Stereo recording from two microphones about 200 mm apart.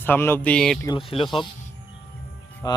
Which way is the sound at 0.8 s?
25° left (ahead or behind).